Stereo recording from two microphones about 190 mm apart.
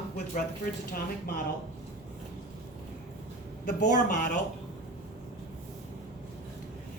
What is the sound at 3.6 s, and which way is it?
Speech, 40° left (ahead or behind).